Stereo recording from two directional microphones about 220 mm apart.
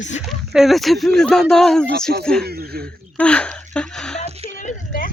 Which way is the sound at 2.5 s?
45° right (ahead or behind).